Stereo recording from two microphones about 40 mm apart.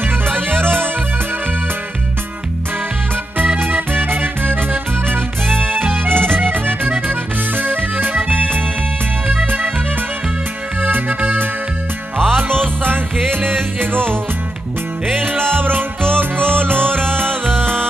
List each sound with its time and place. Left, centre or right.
0.3 s music: right
3.5 s music: right
7.1 s accordion: right
9.3 s music: right
10.8 s music: right
12.4 s music: right
15.1 s music: right